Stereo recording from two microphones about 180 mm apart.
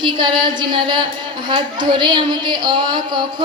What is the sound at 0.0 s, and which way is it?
A woman's voice, 25° right (ahead or behind).